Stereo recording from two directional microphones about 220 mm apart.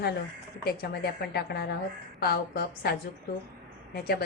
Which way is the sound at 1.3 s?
45° left (ahead or behind).